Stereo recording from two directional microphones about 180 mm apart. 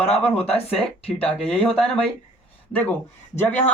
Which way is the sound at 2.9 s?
10° left (ahead or behind).